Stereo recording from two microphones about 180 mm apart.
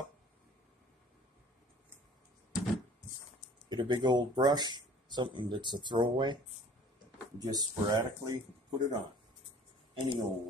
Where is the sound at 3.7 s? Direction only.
25° right (ahead or behind).